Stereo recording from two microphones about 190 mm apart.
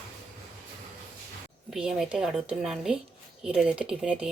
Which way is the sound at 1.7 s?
5° right (ahead or behind).